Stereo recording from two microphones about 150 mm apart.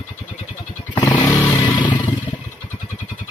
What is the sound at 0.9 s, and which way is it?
Vehicle, 30° left (ahead or behind).